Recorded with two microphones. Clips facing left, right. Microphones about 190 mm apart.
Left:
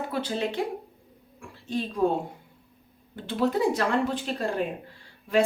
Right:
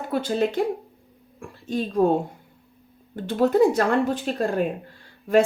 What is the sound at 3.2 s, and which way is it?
Speech, 45° right (ahead or behind).